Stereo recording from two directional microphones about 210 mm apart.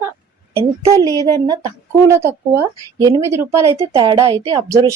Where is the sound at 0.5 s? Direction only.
15° right (ahead or behind).